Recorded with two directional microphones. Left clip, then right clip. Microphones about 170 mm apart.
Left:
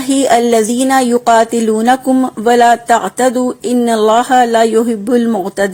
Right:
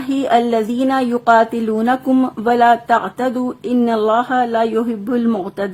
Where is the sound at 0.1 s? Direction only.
20° left (ahead or behind).